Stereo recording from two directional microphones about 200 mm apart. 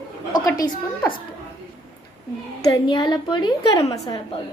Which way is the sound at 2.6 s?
20° left (ahead or behind).